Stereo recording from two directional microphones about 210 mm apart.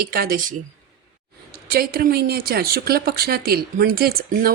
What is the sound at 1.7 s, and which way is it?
A woman's voice, 45° right (ahead or behind).